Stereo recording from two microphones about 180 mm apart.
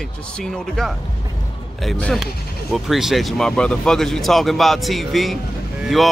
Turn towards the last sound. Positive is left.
turn(degrees=0)  # may be behind; listen again after turning